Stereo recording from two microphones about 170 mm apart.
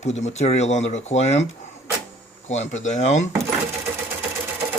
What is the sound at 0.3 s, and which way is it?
Speech, 40° left (ahead or behind).